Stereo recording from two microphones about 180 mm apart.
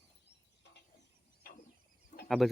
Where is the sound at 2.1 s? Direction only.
40° left (ahead or behind).